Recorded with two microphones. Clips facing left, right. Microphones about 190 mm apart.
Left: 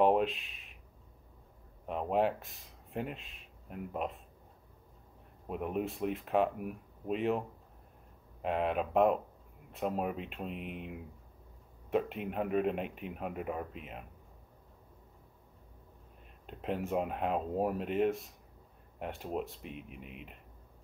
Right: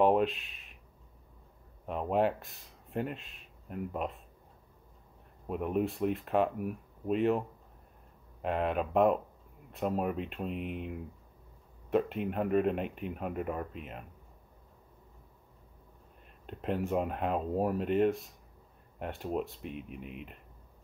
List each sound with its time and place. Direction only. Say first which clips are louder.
0.0 s a sound: right 1 dB; centre (ahead or behind)
1.9 s speech: right 1 dB; centre (ahead or behind)
5.5 s speech: right 4 dB; centre (ahead or behind)
16.4 s speech: right 3 dB; centre (ahead or behind)